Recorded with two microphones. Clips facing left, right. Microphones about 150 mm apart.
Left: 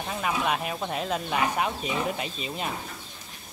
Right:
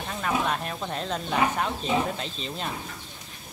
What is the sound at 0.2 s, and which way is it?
Speech, 5° left (ahead or behind).